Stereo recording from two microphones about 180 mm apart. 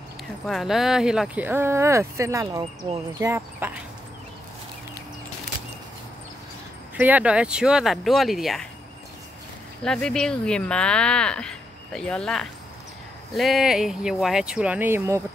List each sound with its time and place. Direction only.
0.5 s speech: centre (ahead or behind)
7.0 s speech: 10° right (ahead or behind)
9.8 s speech: 5° left (ahead or behind); by 15.2 s 15° right (ahead or behind)